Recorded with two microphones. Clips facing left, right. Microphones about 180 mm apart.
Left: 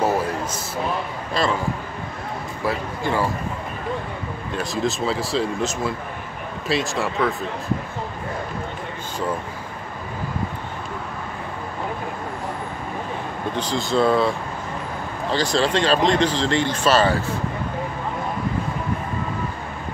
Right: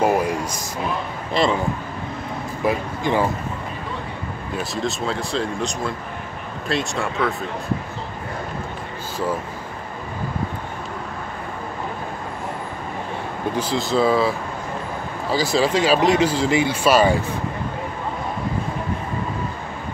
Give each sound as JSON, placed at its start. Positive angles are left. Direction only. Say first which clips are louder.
{"t": 0.0, "sound": "a man's voice", "louder": "right 2 dB", "side_deg": -15}
{"t": 2.6, "sound": "speech", "louder": "right 3 dB", "side_deg": -15}
{"t": 4.7, "sound": "speech", "louder": "left 3 dB", "side_deg": 0}
{"t": 13.6, "sound": "speech", "louder": "even", "side_deg": -5}
{"t": 15.3, "sound": "speech", "louder": "right 1 dB", "side_deg": -10}